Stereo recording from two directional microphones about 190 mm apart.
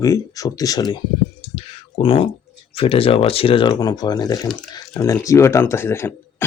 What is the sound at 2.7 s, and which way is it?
Speech, 30° left (ahead or behind).